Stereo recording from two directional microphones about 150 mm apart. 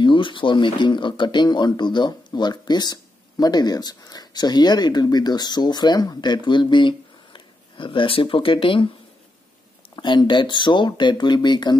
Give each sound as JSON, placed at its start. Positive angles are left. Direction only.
{"t": 0.0, "sound": "speech", "side_deg": 35}
{"t": 9.9, "sound": "speech", "side_deg": 30}